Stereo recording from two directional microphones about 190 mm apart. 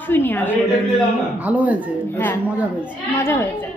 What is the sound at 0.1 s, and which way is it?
Speech, 10° left (ahead or behind).